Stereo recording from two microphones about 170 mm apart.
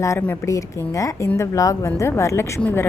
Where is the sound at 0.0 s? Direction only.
15° left (ahead or behind).